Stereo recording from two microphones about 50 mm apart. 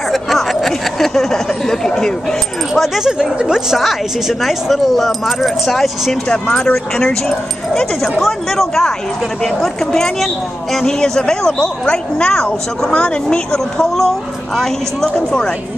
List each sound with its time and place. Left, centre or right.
0.1 s a sound: centre
2.7 s speech: centre
3.1 s speech: centre
3.7 s speech: centre
6.2 s a woman's voice: centre
8.2 s a woman's voice: centre
15.0 s a woman's voice: centre